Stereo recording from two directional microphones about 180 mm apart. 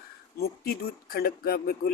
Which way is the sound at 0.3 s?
60° left (ahead or behind).